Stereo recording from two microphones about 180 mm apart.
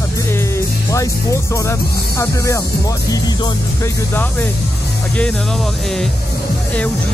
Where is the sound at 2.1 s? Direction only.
15° left (ahead or behind).